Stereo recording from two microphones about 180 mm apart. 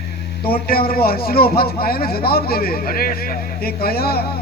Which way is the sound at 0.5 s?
55° left (ahead or behind).